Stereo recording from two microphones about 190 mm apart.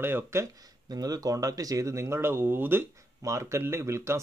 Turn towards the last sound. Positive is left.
turn(degrees=-15)  # may be behind; listen again after turning